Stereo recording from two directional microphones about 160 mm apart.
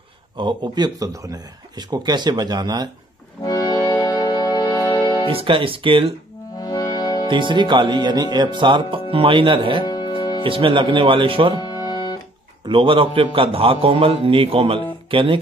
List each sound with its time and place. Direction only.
0.4 s speech: 30° right (ahead or behind)
3.4 s music: 20° left (ahead or behind)
5.3 s a man's voice: 35° right (ahead or behind)
6.6 s music: 20° left (ahead or behind)
7.2 s a man's voice: 30° right (ahead or behind)
9.8 s music: 25° left (ahead or behind)
10.4 s a man's voice: 35° right (ahead or behind)
11.6 s music: 25° left (ahead or behind)
12.6 s a man's voice: 30° right (ahead or behind)